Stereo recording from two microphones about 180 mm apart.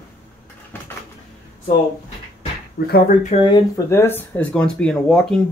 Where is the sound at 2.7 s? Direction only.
60° left (ahead or behind).